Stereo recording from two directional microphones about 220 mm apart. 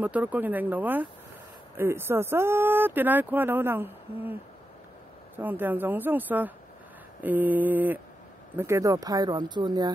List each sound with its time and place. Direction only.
0.0 s speech: 5° right (ahead or behind)